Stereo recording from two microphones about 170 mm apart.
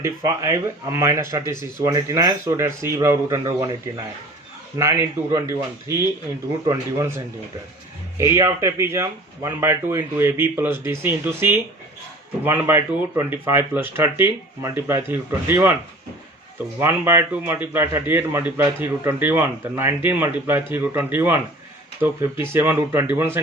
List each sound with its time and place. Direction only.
0.0 s a man's voice: 20° right (ahead or behind)
8.2 s a man's voice: 15° right (ahead or behind)
16.8 s a man's voice: 15° right (ahead or behind)